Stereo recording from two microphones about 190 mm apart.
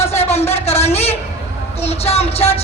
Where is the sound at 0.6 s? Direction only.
30° left (ahead or behind).